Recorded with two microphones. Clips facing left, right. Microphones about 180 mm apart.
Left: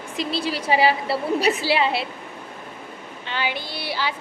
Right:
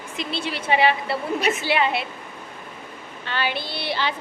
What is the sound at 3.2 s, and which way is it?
Speech, 15° left (ahead or behind).